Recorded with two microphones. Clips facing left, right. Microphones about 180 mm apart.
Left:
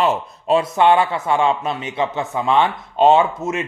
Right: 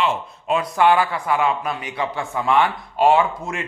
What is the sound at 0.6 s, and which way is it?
A man's voice, 25° left (ahead or behind).